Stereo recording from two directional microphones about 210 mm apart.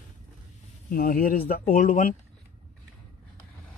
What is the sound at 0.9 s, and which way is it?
Speech, 45° left (ahead or behind).